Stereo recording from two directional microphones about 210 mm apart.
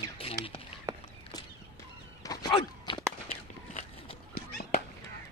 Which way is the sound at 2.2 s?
20° left (ahead or behind).